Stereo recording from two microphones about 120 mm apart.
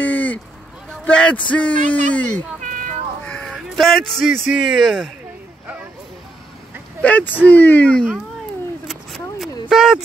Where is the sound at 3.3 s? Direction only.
10° left (ahead or behind).